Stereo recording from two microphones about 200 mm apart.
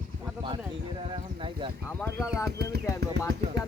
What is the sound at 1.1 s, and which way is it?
Speech, 25° right (ahead or behind).